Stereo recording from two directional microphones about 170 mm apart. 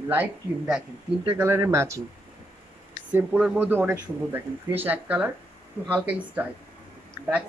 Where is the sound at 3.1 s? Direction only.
5° right (ahead or behind).